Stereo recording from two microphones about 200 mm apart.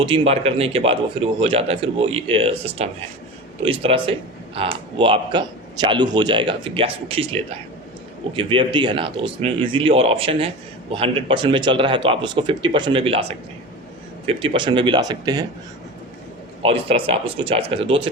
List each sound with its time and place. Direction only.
0.0 s a man's voice: 25° right (ahead or behind)
14.3 s a man's voice: 25° right (ahead or behind)
16.6 s a man's voice: 30° right (ahead or behind)